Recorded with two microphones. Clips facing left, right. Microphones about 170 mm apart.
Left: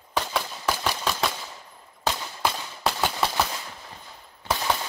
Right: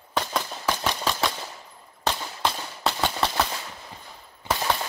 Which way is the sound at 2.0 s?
5° left (ahead or behind).